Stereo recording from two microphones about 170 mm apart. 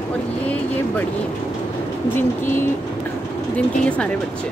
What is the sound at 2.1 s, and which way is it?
Speech, 15° left (ahead or behind).